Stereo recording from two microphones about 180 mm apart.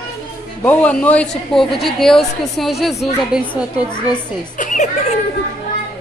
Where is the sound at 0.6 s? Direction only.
10° left (ahead or behind).